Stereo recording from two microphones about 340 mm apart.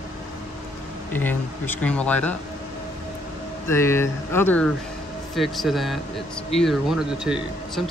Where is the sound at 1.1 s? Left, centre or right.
Centre.